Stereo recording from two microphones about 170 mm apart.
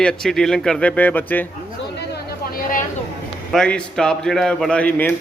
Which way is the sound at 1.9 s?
65° left (ahead or behind).